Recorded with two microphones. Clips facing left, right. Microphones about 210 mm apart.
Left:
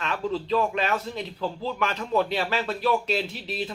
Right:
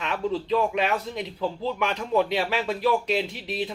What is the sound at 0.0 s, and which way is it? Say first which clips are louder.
A man's voice: right 1 dB; 15° right (ahead or behind).